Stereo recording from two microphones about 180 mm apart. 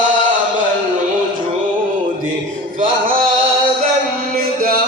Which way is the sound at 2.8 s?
50° right (ahead or behind).